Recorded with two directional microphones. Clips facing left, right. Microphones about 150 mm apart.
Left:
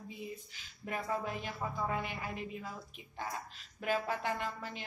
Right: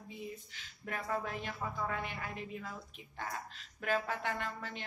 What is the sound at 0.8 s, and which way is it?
A woman's voice, 10° left (ahead or behind).